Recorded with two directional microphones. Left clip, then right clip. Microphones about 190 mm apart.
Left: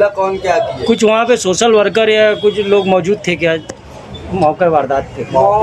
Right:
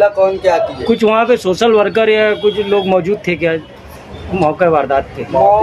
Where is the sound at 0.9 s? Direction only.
Centre (ahead or behind).